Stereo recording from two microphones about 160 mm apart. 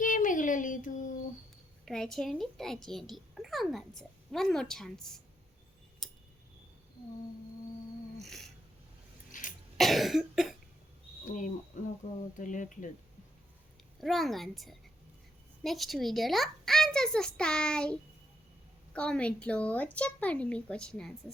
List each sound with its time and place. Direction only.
0.0 s a sound: 55° left (ahead or behind)
1.8 s a child's voice: 5° left (ahead or behind)
8.2 s a sound: centre (ahead or behind)
9.3 s cough: 50° left (ahead or behind)
9.7 s cough: centre (ahead or behind)
11.7 s speech: 50° left (ahead or behind)
14.0 s a child's voice: centre (ahead or behind)
18.9 s a woman's voice: 5° left (ahead or behind)